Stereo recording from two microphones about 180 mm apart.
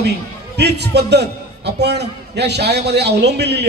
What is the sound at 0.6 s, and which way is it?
A man's voice, 70° right (ahead or behind).